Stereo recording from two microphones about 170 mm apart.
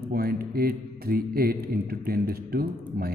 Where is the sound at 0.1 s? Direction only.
60° right (ahead or behind).